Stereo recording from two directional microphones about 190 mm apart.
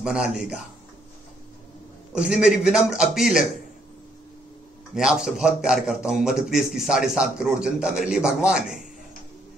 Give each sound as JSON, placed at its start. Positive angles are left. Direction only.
{"t": 0.0, "sound": "a man's voice", "side_deg": -5}
{"t": 2.1, "sound": "a man's voice", "side_deg": -5}
{"t": 4.9, "sound": "a man's voice", "side_deg": -5}